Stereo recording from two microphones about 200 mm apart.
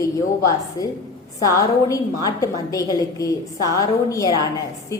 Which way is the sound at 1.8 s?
15° left (ahead or behind).